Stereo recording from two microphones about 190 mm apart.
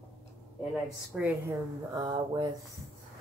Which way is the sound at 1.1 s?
10° right (ahead or behind).